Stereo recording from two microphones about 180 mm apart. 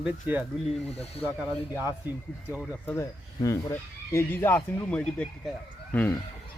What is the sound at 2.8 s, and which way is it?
Speech, 15° left (ahead or behind).